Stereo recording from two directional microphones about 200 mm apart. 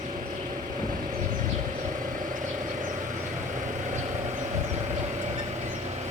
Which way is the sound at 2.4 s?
40° right (ahead or behind).